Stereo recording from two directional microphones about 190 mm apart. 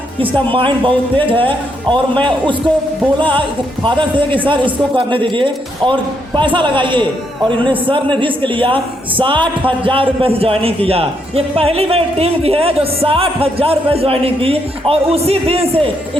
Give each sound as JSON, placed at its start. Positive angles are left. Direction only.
{"t": 0.3, "sound": "a man's voice", "side_deg": -25}
{"t": 3.2, "sound": "a man's voice", "side_deg": -25}